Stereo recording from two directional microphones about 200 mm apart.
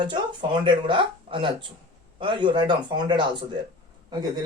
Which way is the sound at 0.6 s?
25° right (ahead or behind).